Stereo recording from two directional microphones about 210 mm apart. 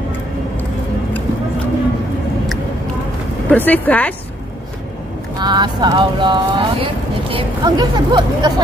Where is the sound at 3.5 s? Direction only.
10° left (ahead or behind).